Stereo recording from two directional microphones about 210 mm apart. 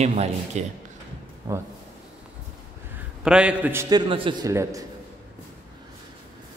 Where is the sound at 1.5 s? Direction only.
15° right (ahead or behind).